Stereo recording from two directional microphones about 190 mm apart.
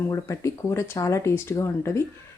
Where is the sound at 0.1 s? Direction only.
15° left (ahead or behind).